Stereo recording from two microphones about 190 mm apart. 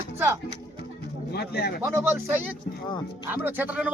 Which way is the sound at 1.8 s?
15° right (ahead or behind).